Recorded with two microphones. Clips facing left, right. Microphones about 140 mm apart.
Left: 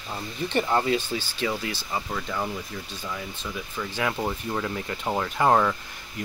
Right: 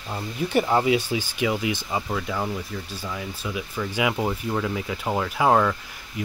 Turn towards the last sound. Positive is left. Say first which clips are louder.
# right 1 dB
turn(degrees=0)  # may be behind; listen again after turning